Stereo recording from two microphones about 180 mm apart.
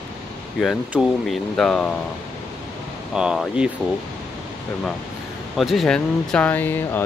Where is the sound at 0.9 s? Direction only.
Centre (ahead or behind).